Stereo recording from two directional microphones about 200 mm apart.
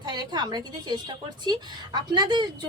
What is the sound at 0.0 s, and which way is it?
A woman's voice, 20° right (ahead or behind).